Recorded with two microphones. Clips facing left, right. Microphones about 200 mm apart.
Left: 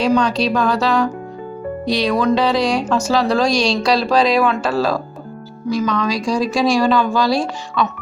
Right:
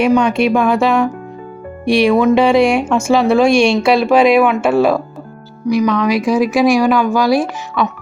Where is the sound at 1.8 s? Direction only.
30° right (ahead or behind).